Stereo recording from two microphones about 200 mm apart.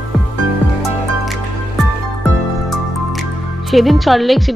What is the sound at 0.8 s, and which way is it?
Music, centre (ahead or behind).